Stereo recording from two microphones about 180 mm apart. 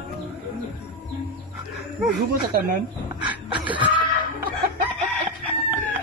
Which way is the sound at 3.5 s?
25° right (ahead or behind).